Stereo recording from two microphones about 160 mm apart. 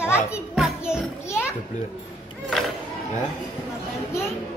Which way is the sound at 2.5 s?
Centre (ahead or behind).